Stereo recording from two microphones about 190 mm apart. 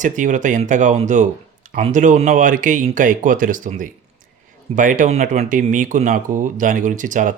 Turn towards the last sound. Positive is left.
turn(degrees=-45)  # may be behind; listen again after turning